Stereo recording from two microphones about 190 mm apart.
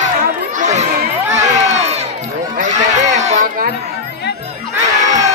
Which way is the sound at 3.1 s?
40° right (ahead or behind).